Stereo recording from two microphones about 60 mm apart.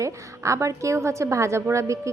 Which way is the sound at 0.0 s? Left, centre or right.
Right.